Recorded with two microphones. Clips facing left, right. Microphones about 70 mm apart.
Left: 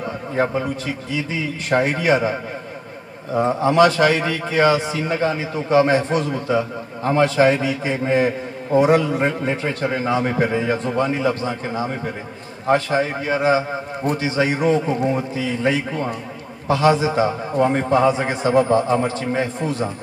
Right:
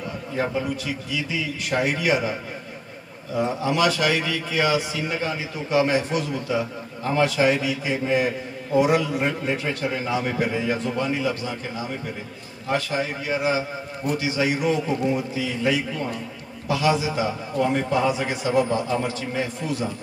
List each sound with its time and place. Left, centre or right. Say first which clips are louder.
0.4 s a man's voice: left 4 dB; left
3.3 s a man's voice: left 7 dB; left